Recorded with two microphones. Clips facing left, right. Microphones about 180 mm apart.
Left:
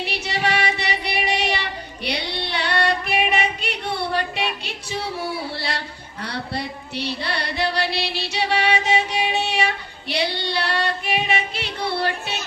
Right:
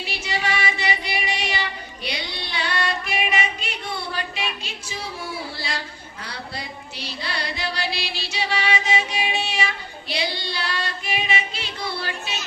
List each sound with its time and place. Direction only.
0.0 s child singing: 65° left (ahead or behind)
2.0 s female singing: 65° left (ahead or behind)
5.5 s a sound: 65° left (ahead or behind)
6.2 s female singing: 65° left (ahead or behind)